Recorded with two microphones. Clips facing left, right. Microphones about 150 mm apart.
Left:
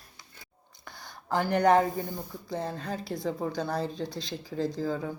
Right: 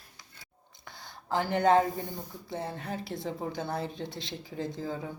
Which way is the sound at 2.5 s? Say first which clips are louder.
Left 2 dB; 20° right (ahead or behind).